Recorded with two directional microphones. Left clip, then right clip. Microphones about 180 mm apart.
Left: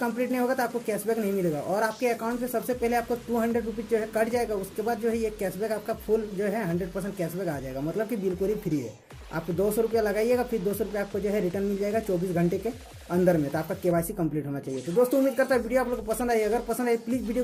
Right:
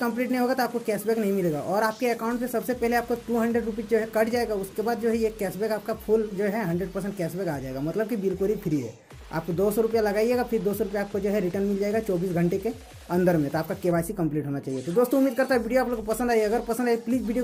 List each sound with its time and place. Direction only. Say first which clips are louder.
0.0 s speech: right 1 dB; 25° right (ahead or behind)
9.8 s speech: right 2 dB; 25° right (ahead or behind)